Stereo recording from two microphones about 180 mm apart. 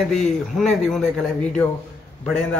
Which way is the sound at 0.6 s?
5° left (ahead or behind).